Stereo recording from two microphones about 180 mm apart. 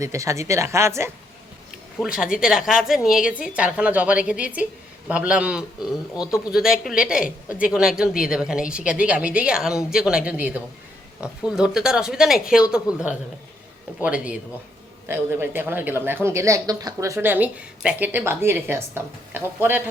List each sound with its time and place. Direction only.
0.0 s a woman's voice: 15° right (ahead or behind)
2.1 s a woman's voice: 5° right (ahead or behind)